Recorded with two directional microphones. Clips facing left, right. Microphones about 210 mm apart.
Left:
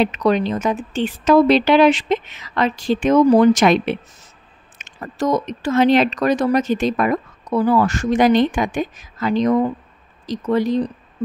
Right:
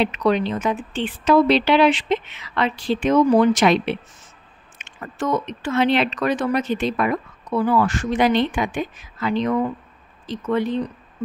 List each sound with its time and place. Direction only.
0.0 s speech: 40° left (ahead or behind)